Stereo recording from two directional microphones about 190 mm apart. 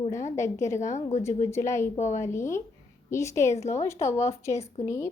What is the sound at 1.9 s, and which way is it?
Speech, 40° left (ahead or behind).